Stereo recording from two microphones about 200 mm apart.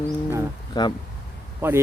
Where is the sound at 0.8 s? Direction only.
20° left (ahead or behind).